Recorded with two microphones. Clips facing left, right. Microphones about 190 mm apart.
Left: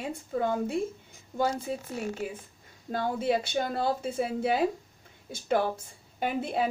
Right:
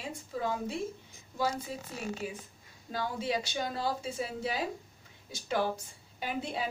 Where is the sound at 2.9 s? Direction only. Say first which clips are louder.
Left 6 dB; 55° left (ahead or behind).